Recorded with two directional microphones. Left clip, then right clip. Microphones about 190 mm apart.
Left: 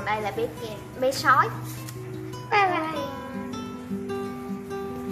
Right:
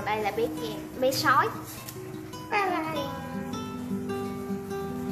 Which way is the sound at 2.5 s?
45° left (ahead or behind).